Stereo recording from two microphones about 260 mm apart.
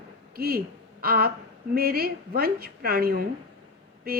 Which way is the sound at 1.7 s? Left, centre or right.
Right.